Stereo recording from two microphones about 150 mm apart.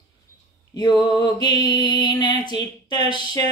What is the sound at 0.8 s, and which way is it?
Music, 30° left (ahead or behind).